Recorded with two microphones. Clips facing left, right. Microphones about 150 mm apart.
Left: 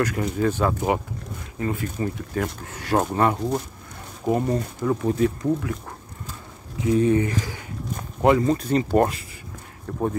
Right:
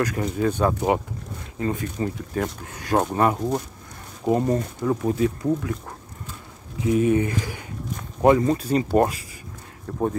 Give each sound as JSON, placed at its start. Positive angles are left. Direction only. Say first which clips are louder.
{"t": 0.1, "sound": "speech", "louder": "even", "side_deg": -25}
{"t": 5.4, "sound": "speech", "louder": "even", "side_deg": -30}
{"t": 6.8, "sound": "speech", "louder": "even", "side_deg": -20}